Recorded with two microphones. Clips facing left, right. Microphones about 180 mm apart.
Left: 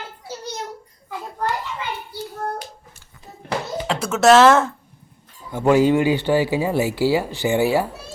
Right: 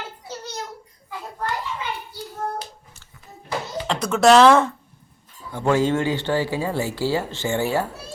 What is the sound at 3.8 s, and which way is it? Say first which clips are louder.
Speech: left 1 dB; 5° left (ahead or behind).